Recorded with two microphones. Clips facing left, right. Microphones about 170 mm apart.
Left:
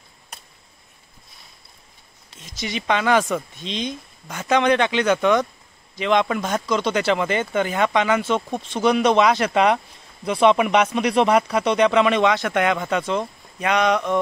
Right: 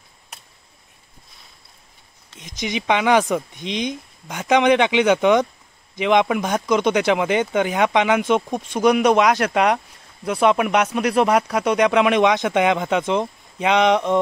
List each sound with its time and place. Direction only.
2.3 s speech: 15° right (ahead or behind)